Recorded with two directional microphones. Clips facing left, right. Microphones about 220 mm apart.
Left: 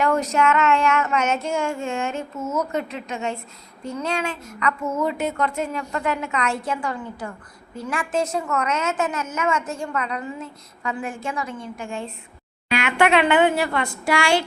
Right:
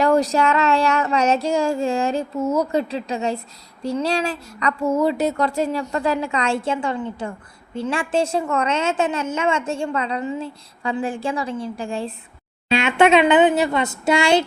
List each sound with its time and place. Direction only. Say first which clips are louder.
0.0 s a sound: right 3 dB; 35° right (ahead or behind)
3.8 s speech: right 5 dB; 35° right (ahead or behind)
12.7 s speech: right 4 dB; 25° right (ahead or behind)